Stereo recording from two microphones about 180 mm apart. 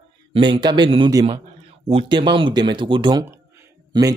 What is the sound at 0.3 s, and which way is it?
Speech, 25° right (ahead or behind).